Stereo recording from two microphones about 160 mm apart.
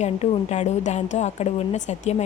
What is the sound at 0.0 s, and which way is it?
A woman's voice, 45° left (ahead or behind).